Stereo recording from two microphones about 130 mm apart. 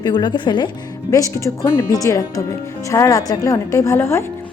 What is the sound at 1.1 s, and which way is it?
Speech, 25° left (ahead or behind).